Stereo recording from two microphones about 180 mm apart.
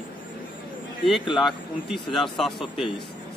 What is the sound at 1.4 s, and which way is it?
Speech, centre (ahead or behind).